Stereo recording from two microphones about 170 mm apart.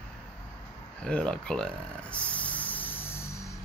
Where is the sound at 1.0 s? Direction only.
5° left (ahead or behind).